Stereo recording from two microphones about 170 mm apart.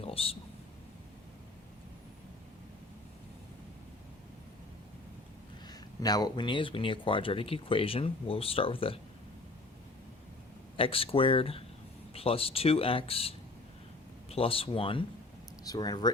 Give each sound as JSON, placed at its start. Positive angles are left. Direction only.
{"t": 0.0, "sound": "a sound", "side_deg": 35}
{"t": 5.6, "sound": "speech", "side_deg": 20}
{"t": 10.8, "sound": "speech", "side_deg": 35}